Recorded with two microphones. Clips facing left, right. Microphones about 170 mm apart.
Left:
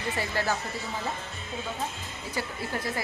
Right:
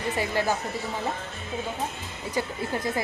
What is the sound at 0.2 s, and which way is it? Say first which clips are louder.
Speech: right 4 dB; 15° right (ahead or behind).